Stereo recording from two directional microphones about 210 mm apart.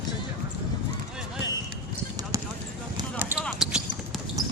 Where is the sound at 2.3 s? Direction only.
15° right (ahead or behind).